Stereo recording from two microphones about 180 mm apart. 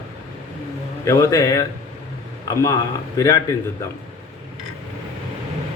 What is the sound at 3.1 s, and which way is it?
Speech, 20° left (ahead or behind).